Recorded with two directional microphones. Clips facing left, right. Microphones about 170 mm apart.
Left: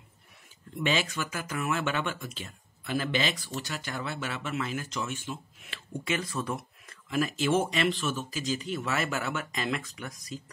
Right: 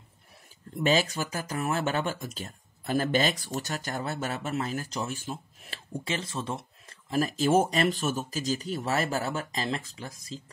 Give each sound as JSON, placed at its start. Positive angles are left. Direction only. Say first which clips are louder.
{"t": 0.7, "sound": "speech", "louder": "right 4 dB", "side_deg": -40}